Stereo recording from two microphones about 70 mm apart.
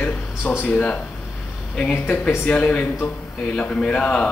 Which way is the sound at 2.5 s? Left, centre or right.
Centre.